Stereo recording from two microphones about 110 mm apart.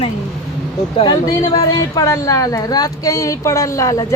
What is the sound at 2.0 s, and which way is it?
A woman's voice, 30° left (ahead or behind).